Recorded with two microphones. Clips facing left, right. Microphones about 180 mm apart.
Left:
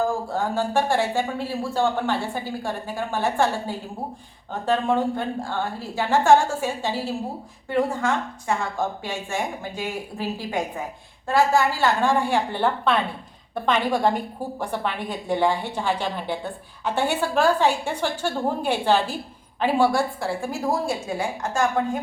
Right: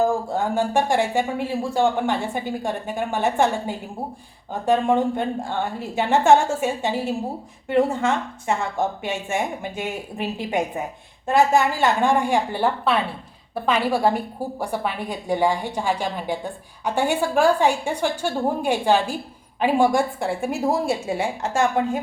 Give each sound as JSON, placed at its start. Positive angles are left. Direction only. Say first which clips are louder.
{"t": 0.3, "sound": "a woman's voice", "louder": "right 2 dB", "side_deg": -15}